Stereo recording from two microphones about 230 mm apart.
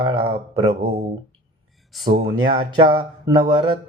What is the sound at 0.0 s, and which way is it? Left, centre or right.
Speech, right.